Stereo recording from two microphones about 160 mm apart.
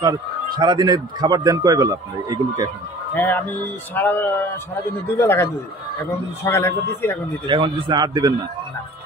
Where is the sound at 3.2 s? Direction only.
10° left (ahead or behind).